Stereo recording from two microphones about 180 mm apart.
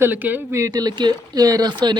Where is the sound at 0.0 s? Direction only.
10° right (ahead or behind).